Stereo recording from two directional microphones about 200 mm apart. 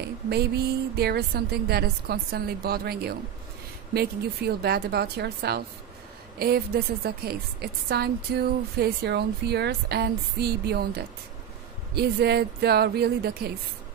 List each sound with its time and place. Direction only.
0.0 s speech: 55° right (ahead or behind)